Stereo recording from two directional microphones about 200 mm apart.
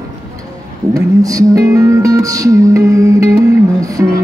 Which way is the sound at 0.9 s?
15° right (ahead or behind).